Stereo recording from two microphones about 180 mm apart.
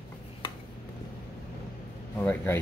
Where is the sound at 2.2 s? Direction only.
10° left (ahead or behind).